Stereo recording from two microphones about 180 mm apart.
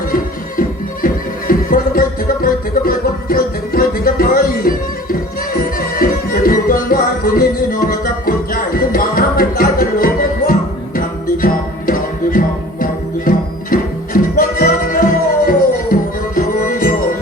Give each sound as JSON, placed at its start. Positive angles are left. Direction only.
{"t": 1.0, "sound": "music", "side_deg": 50}